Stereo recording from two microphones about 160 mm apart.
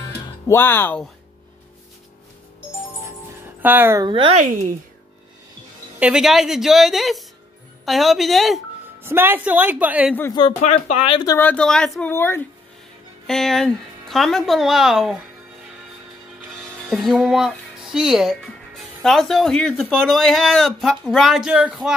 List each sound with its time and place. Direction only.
0.5 s speech: 15° left (ahead or behind)
3.6 s a woman's voice: 15° right (ahead or behind)
4.0 s speech: 30° right (ahead or behind)
5.9 s speech: 5° right (ahead or behind)
9.0 s a woman's voice: 15° right (ahead or behind)
10.6 s speech: 45° left (ahead or behind)
11.3 s speech: 10° left (ahead or behind)
12.1 s speech: 15° left (ahead or behind)
13.3 s speech: centre (ahead or behind)
16.9 s speech: centre (ahead or behind)